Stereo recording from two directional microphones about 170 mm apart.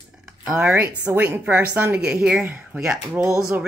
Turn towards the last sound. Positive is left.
turn(degrees=-10)  # may be behind; listen again after turning